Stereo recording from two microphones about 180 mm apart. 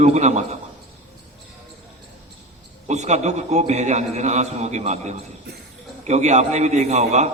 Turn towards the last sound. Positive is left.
turn(degrees=-40)  # may be behind; listen again after turning